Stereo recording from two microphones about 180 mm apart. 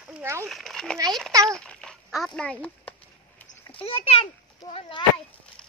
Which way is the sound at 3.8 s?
35° left (ahead or behind).